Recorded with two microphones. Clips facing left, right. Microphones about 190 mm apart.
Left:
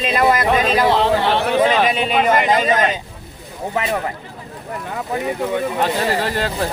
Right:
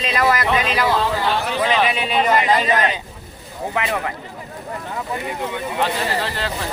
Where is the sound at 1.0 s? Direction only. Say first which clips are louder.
Left 4 dB; 65° left (ahead or behind).